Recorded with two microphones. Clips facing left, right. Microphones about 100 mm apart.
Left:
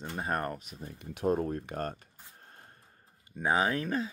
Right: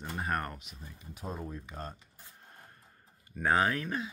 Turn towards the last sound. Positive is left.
turn(degrees=35)  # may be behind; listen again after turning